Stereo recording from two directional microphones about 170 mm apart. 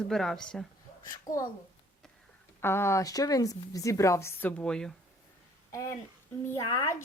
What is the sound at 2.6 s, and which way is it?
A woman's voice, 15° left (ahead or behind).